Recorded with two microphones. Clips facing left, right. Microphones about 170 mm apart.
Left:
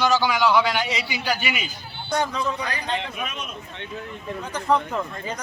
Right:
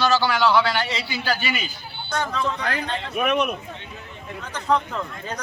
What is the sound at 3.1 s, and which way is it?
Speech, 65° right (ahead or behind).